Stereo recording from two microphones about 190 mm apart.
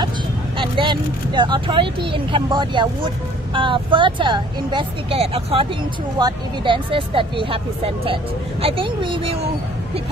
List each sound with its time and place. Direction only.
0.6 s speech: 25° right (ahead or behind)